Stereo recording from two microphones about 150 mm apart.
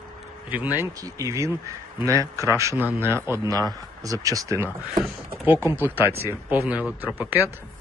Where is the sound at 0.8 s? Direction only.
25° right (ahead or behind).